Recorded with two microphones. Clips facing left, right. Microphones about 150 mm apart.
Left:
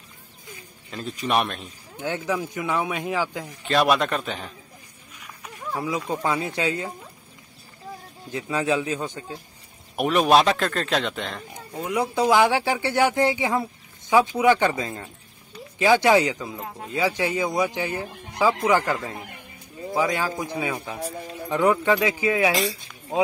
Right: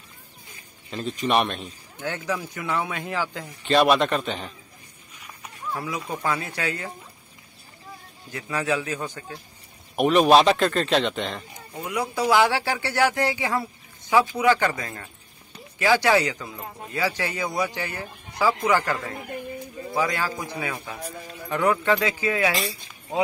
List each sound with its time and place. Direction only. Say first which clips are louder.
0.9 s speech: right 1 dB; centre (ahead or behind)
2.0 s speech: left 3 dB; 15° left (ahead or behind)
3.6 s speech: right 2 dB; centre (ahead or behind)
5.8 s a man's voice: left 5 dB; 20° left (ahead or behind)
8.3 s a man's voice: left 2 dB; 20° left (ahead or behind)
9.9 s speech: right 2 dB; centre (ahead or behind)
11.7 s a man's voice: left 3 dB; 20° left (ahead or behind)
22.6 s speech: left 4 dB; centre (ahead or behind)